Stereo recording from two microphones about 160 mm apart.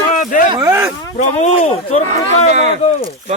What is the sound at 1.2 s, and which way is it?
Speech, 50° left (ahead or behind).